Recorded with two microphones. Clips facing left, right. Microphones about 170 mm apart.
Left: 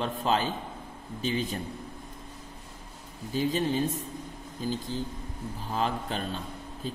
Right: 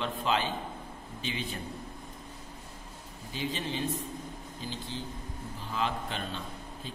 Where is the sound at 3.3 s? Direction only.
45° left (ahead or behind).